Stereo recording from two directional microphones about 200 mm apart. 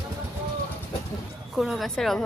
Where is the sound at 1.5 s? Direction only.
Centre (ahead or behind).